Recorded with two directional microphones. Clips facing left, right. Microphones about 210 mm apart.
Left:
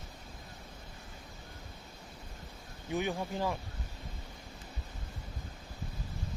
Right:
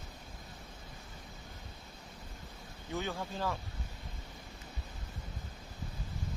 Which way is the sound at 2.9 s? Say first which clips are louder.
Left 4 dB; 15° left (ahead or behind).